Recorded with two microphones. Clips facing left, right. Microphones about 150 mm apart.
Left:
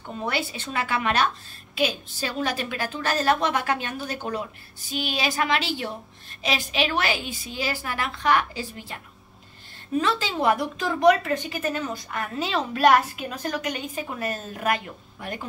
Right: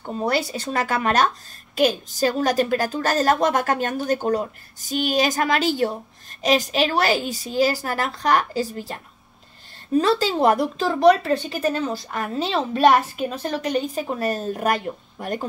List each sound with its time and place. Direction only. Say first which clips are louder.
0.0 s a woman's voice: right 6 dB; 40° right (ahead or behind)